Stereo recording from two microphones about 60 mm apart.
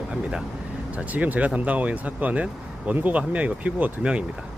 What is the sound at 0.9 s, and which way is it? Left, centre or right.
Speech, right.